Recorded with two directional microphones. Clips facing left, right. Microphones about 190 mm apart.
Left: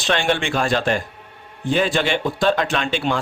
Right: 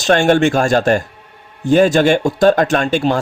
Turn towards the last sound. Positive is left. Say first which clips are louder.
# right 7 dB
turn(degrees=-40)  # may be behind; listen again after turning